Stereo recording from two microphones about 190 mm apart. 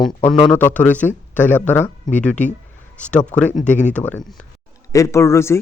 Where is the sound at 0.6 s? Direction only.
10° left (ahead or behind).